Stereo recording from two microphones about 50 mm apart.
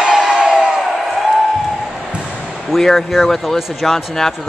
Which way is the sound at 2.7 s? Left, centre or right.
Centre.